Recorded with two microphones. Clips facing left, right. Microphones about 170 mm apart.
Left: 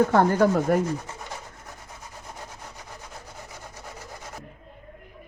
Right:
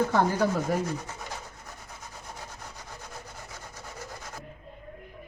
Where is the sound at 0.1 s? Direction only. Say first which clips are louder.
Left 5 dB; 55° left (ahead or behind).